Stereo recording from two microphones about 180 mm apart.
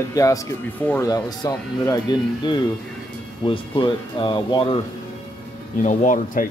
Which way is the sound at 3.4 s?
25° left (ahead or behind).